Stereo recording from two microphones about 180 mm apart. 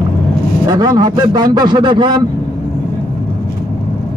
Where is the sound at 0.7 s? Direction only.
20° right (ahead or behind).